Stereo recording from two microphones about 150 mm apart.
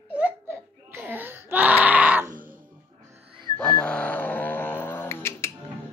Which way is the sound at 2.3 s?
65° right (ahead or behind).